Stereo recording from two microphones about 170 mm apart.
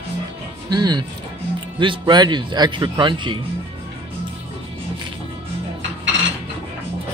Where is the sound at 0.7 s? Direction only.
25° right (ahead or behind).